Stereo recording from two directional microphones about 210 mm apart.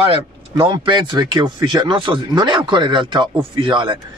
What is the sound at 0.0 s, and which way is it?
Speech, 25° right (ahead or behind).